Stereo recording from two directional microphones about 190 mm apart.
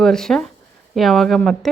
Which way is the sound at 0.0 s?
5° left (ahead or behind).